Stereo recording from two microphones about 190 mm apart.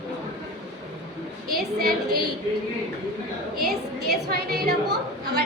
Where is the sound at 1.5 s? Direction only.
55° right (ahead or behind).